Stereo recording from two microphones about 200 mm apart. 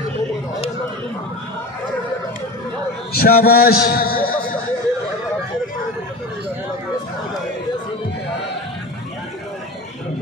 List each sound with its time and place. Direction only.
3.1 s a man's voice: 50° left (ahead or behind)